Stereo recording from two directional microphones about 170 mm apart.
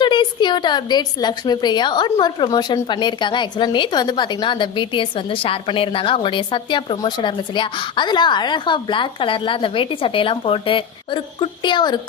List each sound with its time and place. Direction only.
0.0 s a woman's voice: 25° left (ahead or behind)